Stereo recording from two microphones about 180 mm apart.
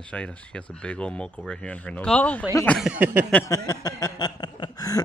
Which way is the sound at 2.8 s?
10° right (ahead or behind).